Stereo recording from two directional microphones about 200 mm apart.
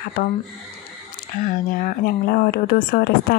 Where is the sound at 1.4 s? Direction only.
40° left (ahead or behind).